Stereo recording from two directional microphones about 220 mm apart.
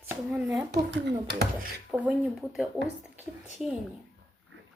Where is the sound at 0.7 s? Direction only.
50° right (ahead or behind).